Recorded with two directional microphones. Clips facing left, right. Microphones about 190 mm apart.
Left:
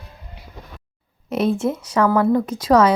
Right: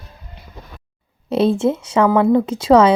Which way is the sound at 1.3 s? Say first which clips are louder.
Right 4 dB; 30° right (ahead or behind).